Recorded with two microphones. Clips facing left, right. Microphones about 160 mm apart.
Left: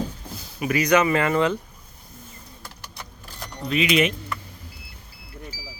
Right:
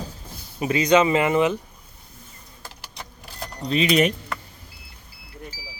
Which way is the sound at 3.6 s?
35° right (ahead or behind).